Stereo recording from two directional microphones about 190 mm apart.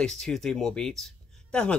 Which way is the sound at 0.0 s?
5° left (ahead or behind).